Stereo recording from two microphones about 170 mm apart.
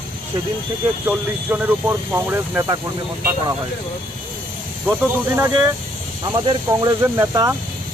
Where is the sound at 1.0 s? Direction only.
15° right (ahead or behind).